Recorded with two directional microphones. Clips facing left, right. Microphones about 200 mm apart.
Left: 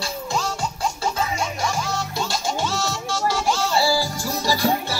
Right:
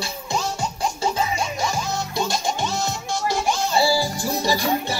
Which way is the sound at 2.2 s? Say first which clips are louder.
Right 1 dB; 20° right (ahead or behind).